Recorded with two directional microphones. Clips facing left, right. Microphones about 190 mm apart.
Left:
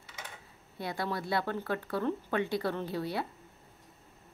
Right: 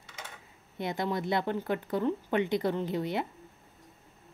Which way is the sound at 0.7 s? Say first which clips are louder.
Right 3 dB; 20° right (ahead or behind).